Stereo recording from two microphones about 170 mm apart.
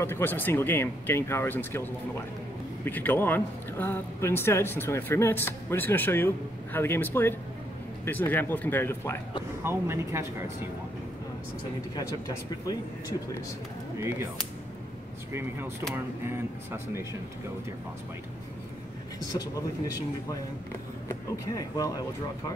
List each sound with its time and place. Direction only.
0.0 s speech: 10° left (ahead or behind)
9.6 s speech: 15° right (ahead or behind)
11.9 s speech: 20° left (ahead or behind)
13.9 s speech: 15° right (ahead or behind)
16.3 s speech: 15° right (ahead or behind)
21.1 s speech: 20° left (ahead or behind)